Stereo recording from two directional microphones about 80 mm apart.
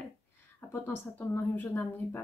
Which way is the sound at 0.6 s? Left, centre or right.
Left.